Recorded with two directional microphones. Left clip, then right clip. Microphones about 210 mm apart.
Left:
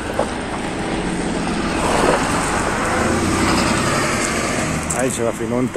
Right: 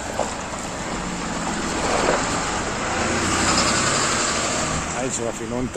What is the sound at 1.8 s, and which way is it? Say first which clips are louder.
Waves: left 4 dB; 30° left (ahead or behind).